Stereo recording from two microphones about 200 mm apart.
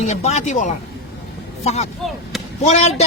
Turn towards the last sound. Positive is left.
turn(degrees=35)  # may be behind; listen again after turning